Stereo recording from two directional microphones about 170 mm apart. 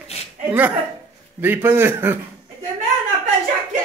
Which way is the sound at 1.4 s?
10° right (ahead or behind).